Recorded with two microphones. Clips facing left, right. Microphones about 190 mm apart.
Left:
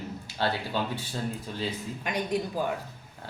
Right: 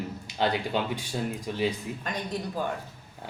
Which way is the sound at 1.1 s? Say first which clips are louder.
Right 2 dB; 15° right (ahead or behind).